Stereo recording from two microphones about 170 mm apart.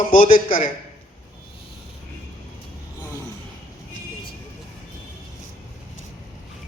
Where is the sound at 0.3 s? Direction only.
30° left (ahead or behind).